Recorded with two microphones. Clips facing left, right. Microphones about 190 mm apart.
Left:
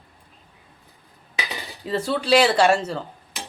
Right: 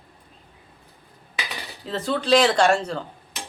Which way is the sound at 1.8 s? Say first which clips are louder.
Left 1 dB; 10° left (ahead or behind).